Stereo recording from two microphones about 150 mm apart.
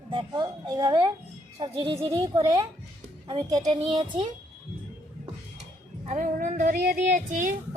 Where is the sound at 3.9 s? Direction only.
45° right (ahead or behind).